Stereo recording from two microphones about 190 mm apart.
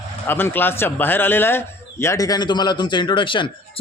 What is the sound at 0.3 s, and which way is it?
Speech, 10° left (ahead or behind).